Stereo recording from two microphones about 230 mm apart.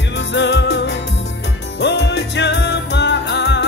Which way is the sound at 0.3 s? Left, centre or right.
Left.